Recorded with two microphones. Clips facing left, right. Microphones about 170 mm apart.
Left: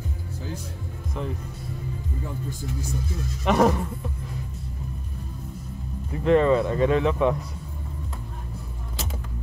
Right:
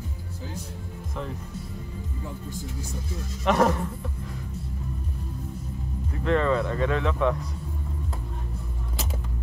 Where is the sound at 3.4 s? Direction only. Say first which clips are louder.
Left 2 dB; 10° left (ahead or behind).